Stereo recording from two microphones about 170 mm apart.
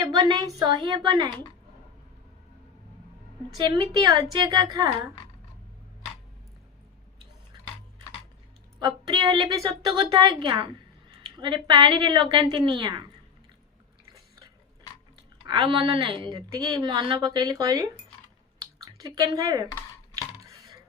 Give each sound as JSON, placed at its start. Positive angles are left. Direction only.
{"t": 0.0, "sound": "a woman's voice", "side_deg": -25}
{"t": 3.6, "sound": "a woman's voice", "side_deg": -25}
{"t": 8.8, "sound": "a woman's voice", "side_deg": -25}
{"t": 15.4, "sound": "a woman's voice", "side_deg": -25}
{"t": 18.6, "sound": "a sound", "side_deg": -20}